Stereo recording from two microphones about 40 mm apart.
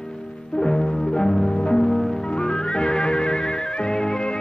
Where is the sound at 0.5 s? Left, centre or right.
Centre.